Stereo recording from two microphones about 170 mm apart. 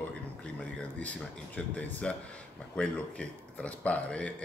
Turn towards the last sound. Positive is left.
turn(degrees=5)  # may be behind; listen again after turning